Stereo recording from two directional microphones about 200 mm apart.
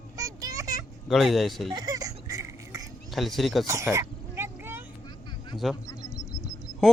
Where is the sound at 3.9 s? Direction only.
10° right (ahead or behind).